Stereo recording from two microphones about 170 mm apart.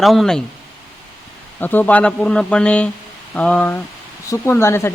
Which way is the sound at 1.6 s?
10° left (ahead or behind).